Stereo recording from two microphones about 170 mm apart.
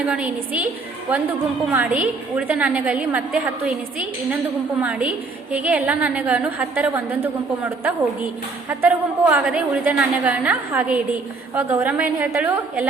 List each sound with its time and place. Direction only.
0.0 s a woman's voice: 5° right (ahead or behind)